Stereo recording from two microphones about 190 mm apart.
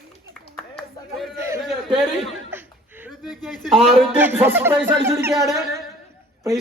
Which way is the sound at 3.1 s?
Centre (ahead or behind).